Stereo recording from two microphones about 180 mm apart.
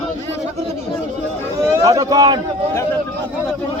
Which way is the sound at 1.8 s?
20° right (ahead or behind).